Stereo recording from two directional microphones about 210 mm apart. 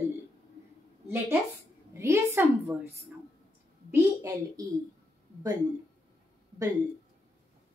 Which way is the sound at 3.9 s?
15° right (ahead or behind).